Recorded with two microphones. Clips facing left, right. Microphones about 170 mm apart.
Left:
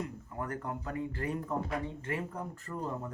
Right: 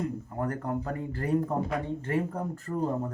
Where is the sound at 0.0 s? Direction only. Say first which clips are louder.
Right 7 dB; 35° right (ahead or behind).